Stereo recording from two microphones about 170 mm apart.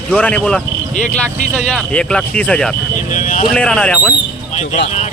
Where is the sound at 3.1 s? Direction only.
50° left (ahead or behind).